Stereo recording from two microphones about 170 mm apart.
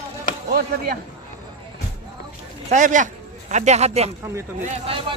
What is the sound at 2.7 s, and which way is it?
Speech, 50° right (ahead or behind).